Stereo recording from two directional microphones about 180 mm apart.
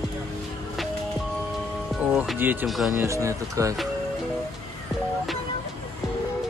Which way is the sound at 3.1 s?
15° right (ahead or behind).